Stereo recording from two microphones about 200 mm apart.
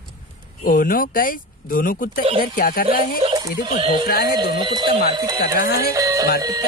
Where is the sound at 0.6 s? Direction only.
45° left (ahead or behind).